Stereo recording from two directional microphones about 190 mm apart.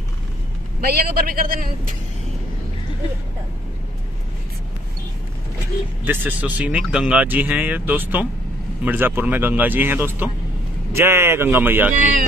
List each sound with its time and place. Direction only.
0.7 s a man's voice: 55° right (ahead or behind)
6.0 s speech: 10° right (ahead or behind)